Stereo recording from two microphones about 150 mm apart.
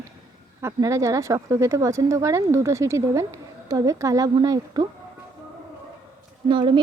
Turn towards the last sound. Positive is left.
turn(degrees=-30)  # may be behind; listen again after turning